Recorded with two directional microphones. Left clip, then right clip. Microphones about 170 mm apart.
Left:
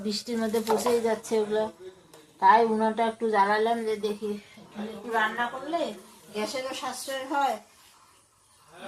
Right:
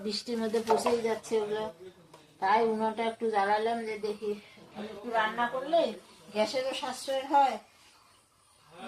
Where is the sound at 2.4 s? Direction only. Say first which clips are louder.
Left 6 dB; 25° left (ahead or behind).